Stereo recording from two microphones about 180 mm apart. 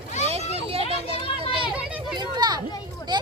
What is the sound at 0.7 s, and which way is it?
Children playing, 35° right (ahead or behind).